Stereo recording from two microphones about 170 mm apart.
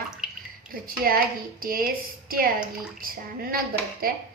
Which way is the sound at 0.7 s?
60° right (ahead or behind).